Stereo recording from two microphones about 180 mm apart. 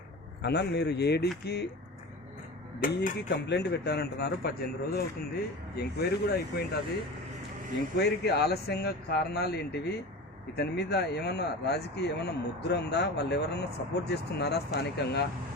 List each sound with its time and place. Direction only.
0.4 s speech: 65° left (ahead or behind)
2.8 s speech: 60° left (ahead or behind)
7.9 s speech: 65° left (ahead or behind)
10.6 s speech: 65° left (ahead or behind)